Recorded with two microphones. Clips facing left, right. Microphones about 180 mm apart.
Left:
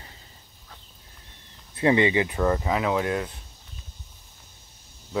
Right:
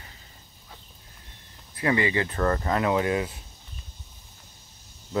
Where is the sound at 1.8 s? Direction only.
25° left (ahead or behind); by 3.3 s centre (ahead or behind).